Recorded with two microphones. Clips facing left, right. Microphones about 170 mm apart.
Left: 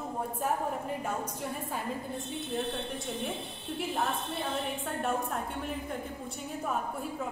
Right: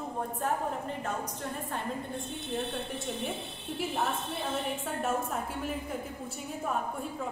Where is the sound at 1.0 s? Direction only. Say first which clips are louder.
Left 1 dB; 5° left (ahead or behind).